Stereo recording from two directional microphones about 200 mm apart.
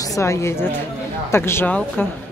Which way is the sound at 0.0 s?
15° left (ahead or behind).